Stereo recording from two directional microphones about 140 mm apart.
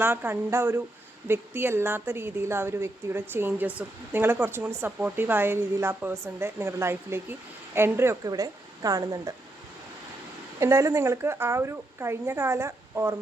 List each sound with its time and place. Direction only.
0.0 s a woman's voice: 15° right (ahead or behind)
10.6 s a woman's voice: 20° right (ahead or behind)